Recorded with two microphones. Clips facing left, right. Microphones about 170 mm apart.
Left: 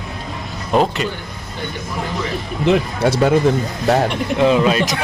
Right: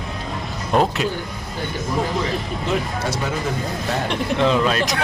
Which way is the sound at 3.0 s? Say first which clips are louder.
Left 8 dB; 65° left (ahead or behind).